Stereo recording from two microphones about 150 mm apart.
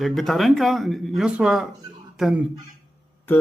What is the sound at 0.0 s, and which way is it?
A man's voice, centre (ahead or behind).